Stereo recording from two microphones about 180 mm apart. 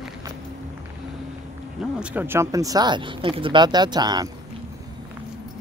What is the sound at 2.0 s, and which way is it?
Speech, 10° right (ahead or behind).